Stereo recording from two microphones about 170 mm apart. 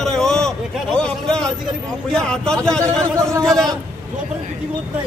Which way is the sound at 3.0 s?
20° right (ahead or behind).